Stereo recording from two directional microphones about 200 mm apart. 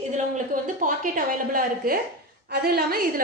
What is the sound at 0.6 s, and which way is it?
A woman's voice, 40° right (ahead or behind).